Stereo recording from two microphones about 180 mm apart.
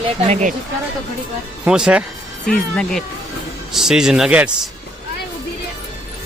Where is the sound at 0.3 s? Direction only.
40° right (ahead or behind).